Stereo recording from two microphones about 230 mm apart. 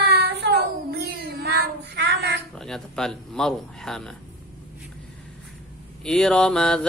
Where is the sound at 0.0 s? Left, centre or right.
Right.